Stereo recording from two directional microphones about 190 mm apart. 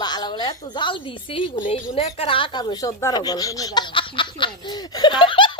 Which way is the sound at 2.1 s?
30° left (ahead or behind).